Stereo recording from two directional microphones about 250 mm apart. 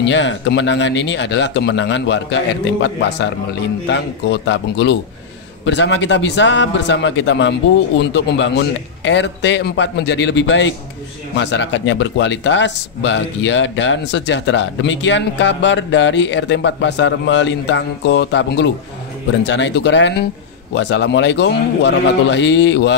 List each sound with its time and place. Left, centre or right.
0.0 s speech: left